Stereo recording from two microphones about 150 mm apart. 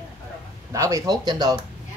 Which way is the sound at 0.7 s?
20° right (ahead or behind).